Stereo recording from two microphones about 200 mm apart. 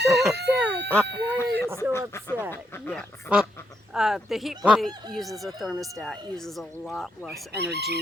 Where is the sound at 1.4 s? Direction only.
15° left (ahead or behind).